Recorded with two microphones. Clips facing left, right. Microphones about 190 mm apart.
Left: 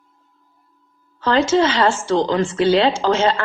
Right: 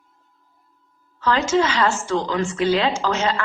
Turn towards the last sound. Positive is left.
turn(degrees=30)  # may be behind; listen again after turning